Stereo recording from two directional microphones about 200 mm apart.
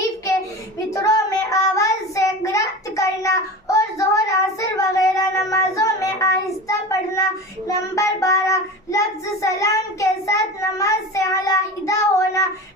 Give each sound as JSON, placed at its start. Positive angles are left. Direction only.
{"t": 0.9, "sound": "child singing", "side_deg": 15}